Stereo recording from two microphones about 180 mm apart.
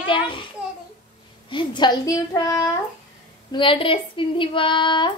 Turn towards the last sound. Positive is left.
turn(degrees=25)  # may be behind; listen again after turning